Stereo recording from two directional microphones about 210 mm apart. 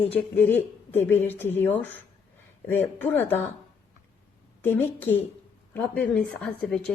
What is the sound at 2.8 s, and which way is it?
Speech, 10° left (ahead or behind).